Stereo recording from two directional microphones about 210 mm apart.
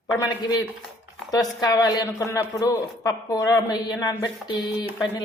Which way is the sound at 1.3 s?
15° left (ahead or behind).